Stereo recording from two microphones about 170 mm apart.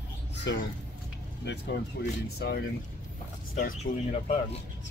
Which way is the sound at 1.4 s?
75° left (ahead or behind).